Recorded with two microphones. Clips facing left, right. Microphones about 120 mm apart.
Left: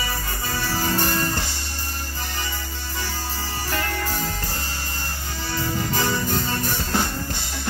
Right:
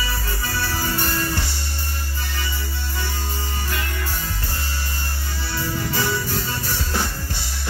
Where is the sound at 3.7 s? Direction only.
40° left (ahead or behind).